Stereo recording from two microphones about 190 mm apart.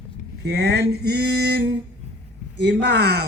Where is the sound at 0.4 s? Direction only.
60° right (ahead or behind).